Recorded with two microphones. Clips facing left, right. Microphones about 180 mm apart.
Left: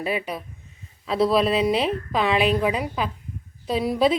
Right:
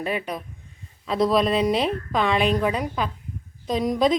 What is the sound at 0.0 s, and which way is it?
A woman's voice, 5° left (ahead or behind).